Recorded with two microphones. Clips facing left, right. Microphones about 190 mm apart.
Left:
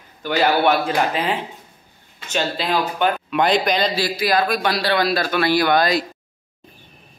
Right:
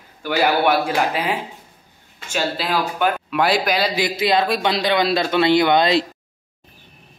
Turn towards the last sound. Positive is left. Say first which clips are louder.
# right 2 dB
turn(degrees=-25)  # may be behind; listen again after turning